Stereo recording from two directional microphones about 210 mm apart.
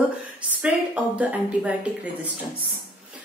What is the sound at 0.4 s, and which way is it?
A woman's voice, 5° right (ahead or behind).